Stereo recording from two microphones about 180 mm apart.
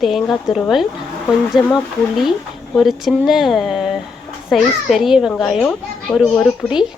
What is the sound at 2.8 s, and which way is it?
A child's voice, centre (ahead or behind).